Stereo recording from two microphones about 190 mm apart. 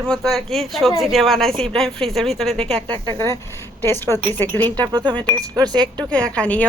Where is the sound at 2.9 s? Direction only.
25° right (ahead or behind).